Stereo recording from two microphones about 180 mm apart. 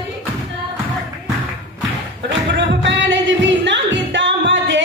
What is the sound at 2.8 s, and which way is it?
Music, 90° right.